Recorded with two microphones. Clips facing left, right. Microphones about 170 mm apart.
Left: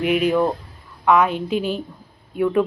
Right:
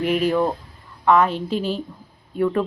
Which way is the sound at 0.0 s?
5° left (ahead or behind).